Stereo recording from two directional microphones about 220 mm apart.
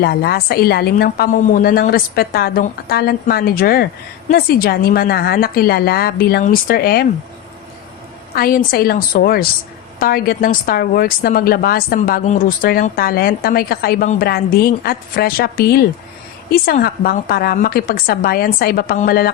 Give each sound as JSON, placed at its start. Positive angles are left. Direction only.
{"t": 0.0, "sound": "a woman's voice", "side_deg": 45}
{"t": 8.4, "sound": "a woman's voice", "side_deg": 40}